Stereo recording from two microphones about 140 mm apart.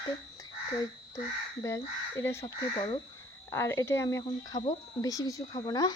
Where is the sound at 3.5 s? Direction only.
20° left (ahead or behind).